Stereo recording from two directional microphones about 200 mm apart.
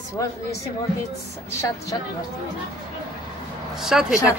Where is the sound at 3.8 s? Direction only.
Centre (ahead or behind).